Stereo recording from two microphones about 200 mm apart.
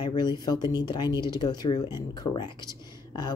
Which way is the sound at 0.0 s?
20° left (ahead or behind).